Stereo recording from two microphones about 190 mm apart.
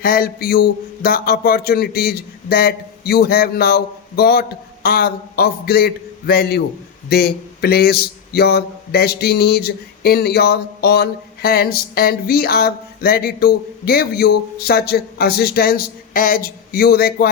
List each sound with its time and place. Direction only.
0.0 s speech: 50° left (ahead or behind)